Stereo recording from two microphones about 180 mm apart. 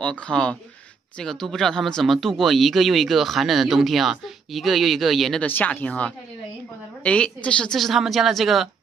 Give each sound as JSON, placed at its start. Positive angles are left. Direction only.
{"t": 0.0, "sound": "speech", "side_deg": 5}